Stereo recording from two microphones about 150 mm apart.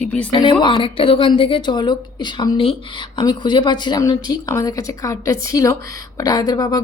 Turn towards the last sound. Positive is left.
turn(degrees=25)  # may be behind; listen again after turning